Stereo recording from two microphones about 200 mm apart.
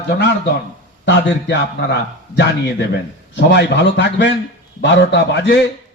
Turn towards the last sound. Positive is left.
turn(degrees=60)  # may be behind; listen again after turning